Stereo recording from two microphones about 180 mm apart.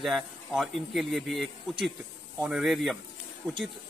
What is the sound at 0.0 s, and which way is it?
A man's voice, centre (ahead or behind).